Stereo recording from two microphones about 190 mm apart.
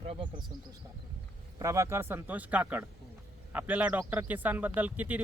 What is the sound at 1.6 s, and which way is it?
A man's voice, 15° right (ahead or behind).